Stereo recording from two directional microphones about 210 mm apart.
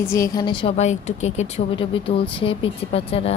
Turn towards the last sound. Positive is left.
turn(degrees=25)  # may be behind; listen again after turning